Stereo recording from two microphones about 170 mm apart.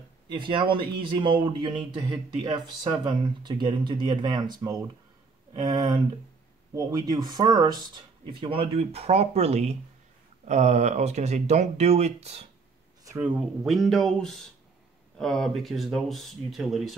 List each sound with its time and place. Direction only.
0.3 s speech: 30° right (ahead or behind)
13.0 s a sound: 15° right (ahead or behind)
13.7 s speech: centre (ahead or behind)